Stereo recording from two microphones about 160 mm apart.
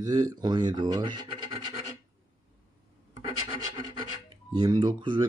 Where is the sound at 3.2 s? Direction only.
25° right (ahead or behind).